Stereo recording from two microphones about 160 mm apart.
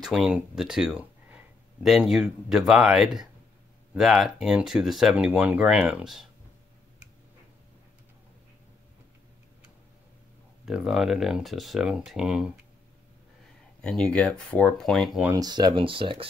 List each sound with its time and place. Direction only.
0.0 s speech: 5° right (ahead or behind)
10.6 s speech: centre (ahead or behind)
13.7 s speech: 5° left (ahead or behind)
15.2 s speech: 25° right (ahead or behind)